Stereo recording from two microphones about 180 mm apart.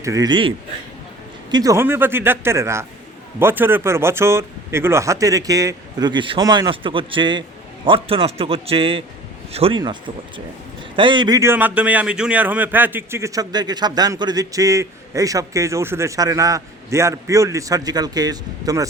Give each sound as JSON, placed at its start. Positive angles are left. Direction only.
{"t": 0.0, "sound": "a man's voice", "side_deg": -20}